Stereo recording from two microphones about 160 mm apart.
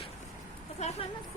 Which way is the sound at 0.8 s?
45° left (ahead or behind).